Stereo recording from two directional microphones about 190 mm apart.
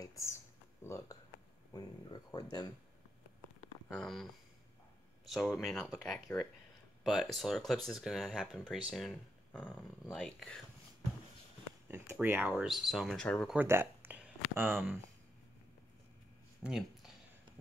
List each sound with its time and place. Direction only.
0.0 s a sound: 15° left (ahead or behind)
0.8 s speech: 15° left (ahead or behind)
3.9 s speech: centre (ahead or behind)
11.9 s speech: 10° right (ahead or behind); by 13.6 s 5° left (ahead or behind)
13.6 s speech: 10° right (ahead or behind)
16.6 s a sound: centre (ahead or behind)